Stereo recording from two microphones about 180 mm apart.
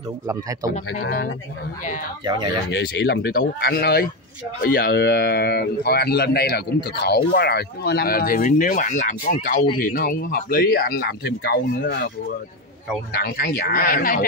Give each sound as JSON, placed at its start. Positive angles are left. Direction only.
{"t": 0.9, "sound": "speech", "side_deg": 55}
{"t": 2.7, "sound": "speech", "side_deg": 70}
{"t": 13.1, "sound": "speech", "side_deg": 55}